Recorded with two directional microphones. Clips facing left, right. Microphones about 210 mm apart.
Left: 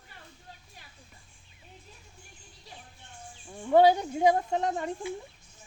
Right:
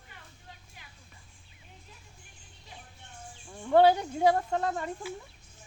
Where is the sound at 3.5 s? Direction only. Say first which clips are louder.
Left 1 dB; 10° left (ahead or behind).